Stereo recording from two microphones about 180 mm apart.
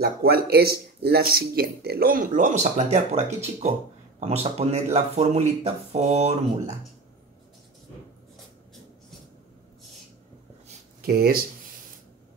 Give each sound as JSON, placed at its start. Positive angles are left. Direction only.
{"t": 0.0, "sound": "speech", "side_deg": -60}
{"t": 11.0, "sound": "speech", "side_deg": -55}